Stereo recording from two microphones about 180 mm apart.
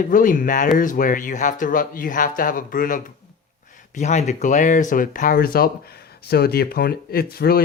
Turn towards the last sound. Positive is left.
turn(degrees=60)  # may be behind; listen again after turning